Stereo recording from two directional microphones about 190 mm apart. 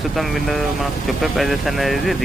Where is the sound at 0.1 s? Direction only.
Centre (ahead or behind).